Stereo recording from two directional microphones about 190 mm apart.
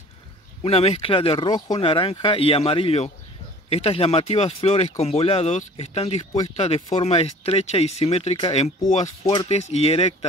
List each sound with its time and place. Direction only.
0.6 s speech: 35° left (ahead or behind)
9.2 s speech: 20° left (ahead or behind)
9.5 s speech: 35° left (ahead or behind)